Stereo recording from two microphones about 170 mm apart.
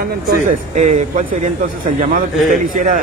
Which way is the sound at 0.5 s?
45° right (ahead or behind).